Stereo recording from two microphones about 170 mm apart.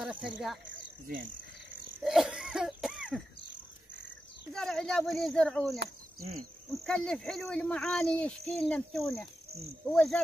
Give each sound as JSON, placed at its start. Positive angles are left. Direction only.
{"t": 0.0, "sound": "speech", "side_deg": -5}
{"t": 1.0, "sound": "speech", "side_deg": -55}
{"t": 2.0, "sound": "cough", "side_deg": -5}
{"t": 4.6, "sound": "speech", "side_deg": 5}